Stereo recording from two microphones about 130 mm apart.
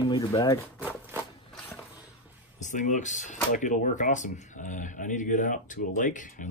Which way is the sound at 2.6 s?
70° left (ahead or behind).